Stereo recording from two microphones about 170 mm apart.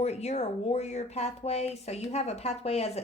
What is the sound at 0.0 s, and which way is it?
Speech, 40° left (ahead or behind).